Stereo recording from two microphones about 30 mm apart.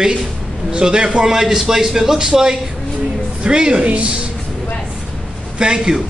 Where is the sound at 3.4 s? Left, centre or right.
Right.